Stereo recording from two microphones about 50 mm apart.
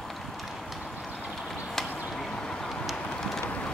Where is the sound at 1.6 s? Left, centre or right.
Centre.